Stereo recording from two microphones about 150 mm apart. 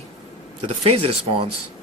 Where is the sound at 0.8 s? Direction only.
40° right (ahead or behind).